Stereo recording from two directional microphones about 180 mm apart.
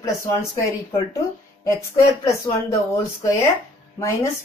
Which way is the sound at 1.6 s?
15° left (ahead or behind).